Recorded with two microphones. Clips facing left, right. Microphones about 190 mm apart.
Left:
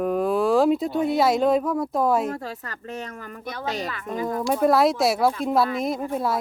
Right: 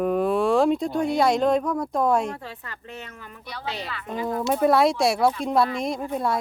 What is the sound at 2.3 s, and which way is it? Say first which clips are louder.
A woman's voice: left 4 dB; 40° left (ahead or behind).